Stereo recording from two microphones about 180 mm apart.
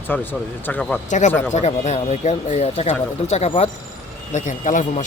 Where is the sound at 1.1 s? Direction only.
45° left (ahead or behind).